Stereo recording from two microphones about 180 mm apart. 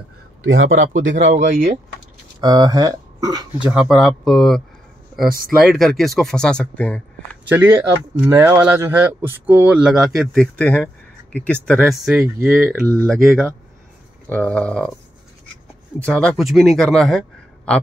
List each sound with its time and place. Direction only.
0.4 s speech: 90° right
2.4 s speech: 20° right (ahead or behind)
3.9 s speech: centre (ahead or behind)
7.4 s speech: 10° right (ahead or behind)
12.2 s speech: 10° right (ahead or behind)
13.0 s speech: centre (ahead or behind)
16.1 s speech: 5° left (ahead or behind)